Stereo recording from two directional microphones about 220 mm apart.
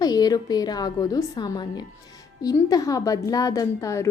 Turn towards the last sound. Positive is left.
turn(degrees=15)  # may be behind; listen again after turning